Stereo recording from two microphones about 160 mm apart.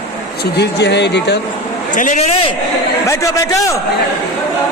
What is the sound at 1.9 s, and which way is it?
Speech, 50° left (ahead or behind).